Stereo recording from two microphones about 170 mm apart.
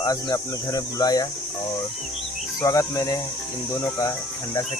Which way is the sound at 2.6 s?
20° left (ahead or behind).